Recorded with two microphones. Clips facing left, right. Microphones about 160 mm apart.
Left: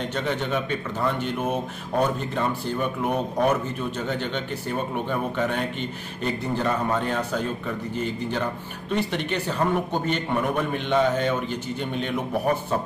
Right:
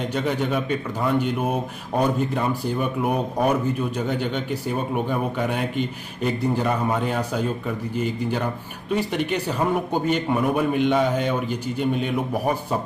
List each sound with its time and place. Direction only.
0.1 s speech: 10° right (ahead or behind)